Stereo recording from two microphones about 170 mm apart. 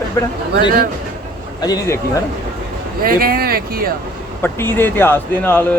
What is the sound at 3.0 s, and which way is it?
Speech, 60° right (ahead or behind).